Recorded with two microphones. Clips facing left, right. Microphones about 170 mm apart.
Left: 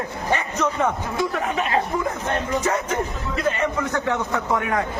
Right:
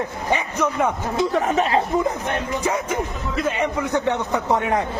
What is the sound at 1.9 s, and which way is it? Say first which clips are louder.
A man's voice: right 2 dB; 20° right (ahead or behind).